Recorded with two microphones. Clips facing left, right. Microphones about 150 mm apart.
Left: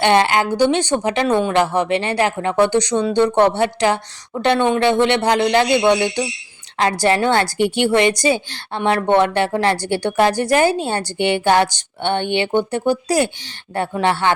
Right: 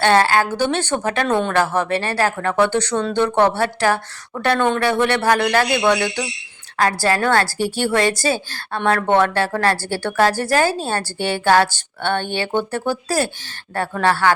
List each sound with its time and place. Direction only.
0.0 s a woman's voice: 20° left (ahead or behind)